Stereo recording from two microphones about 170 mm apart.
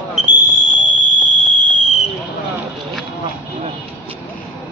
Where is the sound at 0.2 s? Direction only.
45° right (ahead or behind).